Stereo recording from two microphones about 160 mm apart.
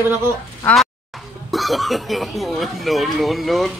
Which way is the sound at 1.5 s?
Centre (ahead or behind).